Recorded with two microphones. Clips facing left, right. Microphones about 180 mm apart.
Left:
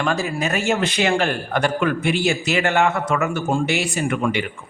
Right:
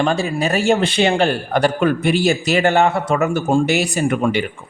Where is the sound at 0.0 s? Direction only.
30° right (ahead or behind).